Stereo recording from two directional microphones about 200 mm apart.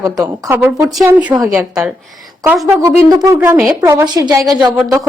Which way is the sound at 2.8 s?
20° right (ahead or behind).